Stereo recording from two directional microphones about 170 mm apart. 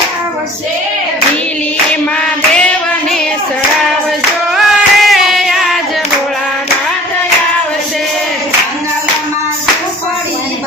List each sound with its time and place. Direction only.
4.5 s music: centre (ahead or behind)